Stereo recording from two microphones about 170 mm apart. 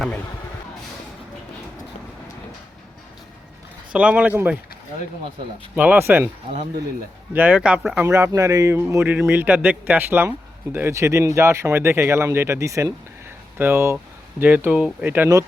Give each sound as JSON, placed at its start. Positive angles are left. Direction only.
{"t": 3.9, "sound": "a man's voice", "side_deg": -10}
{"t": 5.7, "sound": "a man's voice", "side_deg": -10}
{"t": 7.3, "sound": "a man's voice", "side_deg": -10}
{"t": 8.0, "sound": "a man's voice", "side_deg": -15}